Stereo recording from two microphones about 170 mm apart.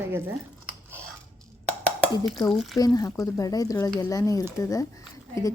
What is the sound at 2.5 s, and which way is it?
Speech, centre (ahead or behind).